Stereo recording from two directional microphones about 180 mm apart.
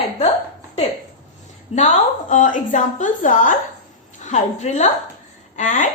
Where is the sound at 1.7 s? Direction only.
40° left (ahead or behind).